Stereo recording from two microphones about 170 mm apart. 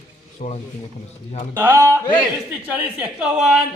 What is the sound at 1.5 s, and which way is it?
Speech, 10° right (ahead or behind).